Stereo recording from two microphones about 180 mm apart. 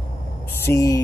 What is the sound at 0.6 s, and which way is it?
Speech, 15° left (ahead or behind).